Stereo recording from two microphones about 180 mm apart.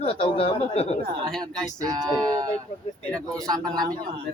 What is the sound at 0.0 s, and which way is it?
Speech, 30° left (ahead or behind).